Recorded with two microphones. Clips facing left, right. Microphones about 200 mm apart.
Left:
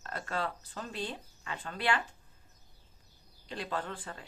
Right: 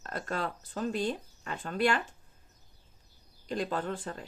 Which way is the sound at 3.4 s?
45° right (ahead or behind).